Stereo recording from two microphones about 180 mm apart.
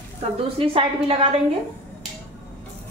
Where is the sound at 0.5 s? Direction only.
30° right (ahead or behind).